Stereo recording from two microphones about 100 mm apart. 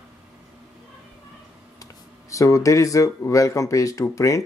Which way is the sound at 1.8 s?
30° left (ahead or behind).